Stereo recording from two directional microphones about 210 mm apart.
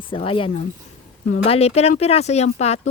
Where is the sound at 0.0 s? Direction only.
25° left (ahead or behind).